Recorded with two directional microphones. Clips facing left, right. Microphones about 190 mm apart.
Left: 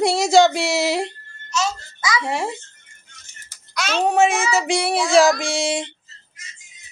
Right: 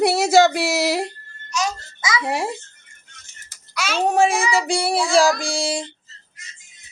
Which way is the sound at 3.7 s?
10° right (ahead or behind).